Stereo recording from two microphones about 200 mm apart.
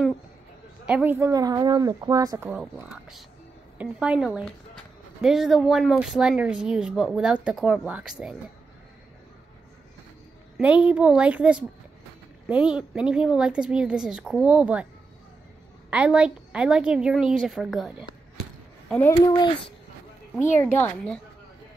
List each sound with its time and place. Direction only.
0.8 s speech: 10° right (ahead or behind)
2.6 s speech: centre (ahead or behind)
10.6 s speech: 5° right (ahead or behind)
15.9 s speech: 5° right (ahead or behind)
19.2 s speech: 20° left (ahead or behind)
20.7 s a woman's voice: 5° left (ahead or behind)